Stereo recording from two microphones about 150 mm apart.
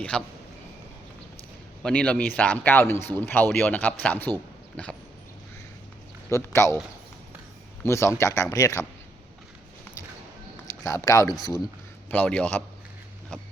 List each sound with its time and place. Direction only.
0.1 s speech: 5° left (ahead or behind)
1.8 s speech: 10° left (ahead or behind)
6.3 s speech: 20° left (ahead or behind)
7.9 s speech: 20° left (ahead or behind)
10.8 s speech: 20° left (ahead or behind)
12.1 s speech: 10° left (ahead or behind)